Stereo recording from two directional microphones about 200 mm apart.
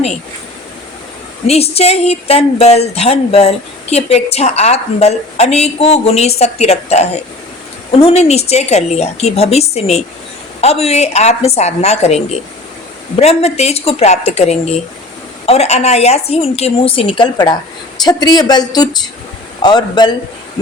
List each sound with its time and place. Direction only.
1.5 s speech: 30° left (ahead or behind)